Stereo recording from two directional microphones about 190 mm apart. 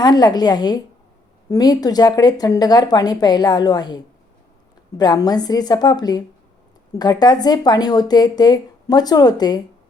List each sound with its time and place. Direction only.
0.0 s speech: 20° left (ahead or behind)